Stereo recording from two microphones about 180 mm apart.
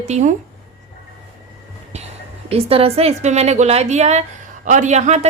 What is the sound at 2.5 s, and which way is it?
A woman's voice, 35° right (ahead or behind).